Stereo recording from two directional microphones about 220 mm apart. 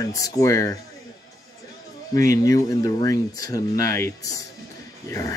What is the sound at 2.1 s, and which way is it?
Speech, 15° left (ahead or behind).